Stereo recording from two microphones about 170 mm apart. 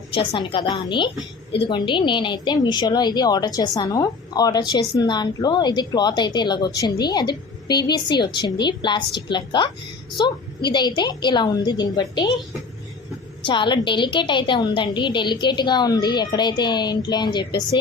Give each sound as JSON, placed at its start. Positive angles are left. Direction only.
{"t": 0.1, "sound": "a woman's voice", "side_deg": 30}
{"t": 13.4, "sound": "a woman's voice", "side_deg": 30}